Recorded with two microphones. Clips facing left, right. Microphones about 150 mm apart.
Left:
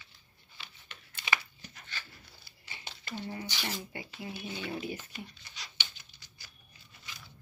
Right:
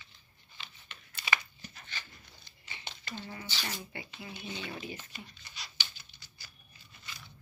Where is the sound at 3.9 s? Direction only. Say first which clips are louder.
Left 3 dB; 35° left (ahead or behind).